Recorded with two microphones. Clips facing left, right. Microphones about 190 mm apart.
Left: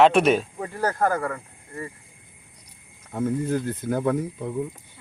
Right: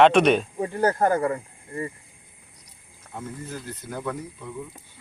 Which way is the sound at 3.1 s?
50° left (ahead or behind).